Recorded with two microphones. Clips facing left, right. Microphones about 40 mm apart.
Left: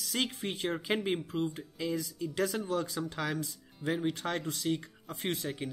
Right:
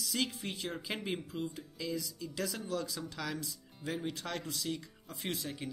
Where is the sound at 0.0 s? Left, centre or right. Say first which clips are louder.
Left 2 dB; left.